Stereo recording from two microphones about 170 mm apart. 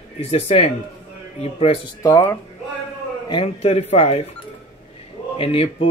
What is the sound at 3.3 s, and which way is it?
Speech, 35° left (ahead or behind).